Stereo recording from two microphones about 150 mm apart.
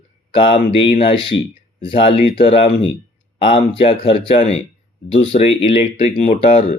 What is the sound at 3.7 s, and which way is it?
Speech, 40° left (ahead or behind).